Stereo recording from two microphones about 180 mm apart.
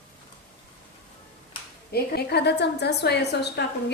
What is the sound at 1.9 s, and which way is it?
A woman's voice, 65° left (ahead or behind).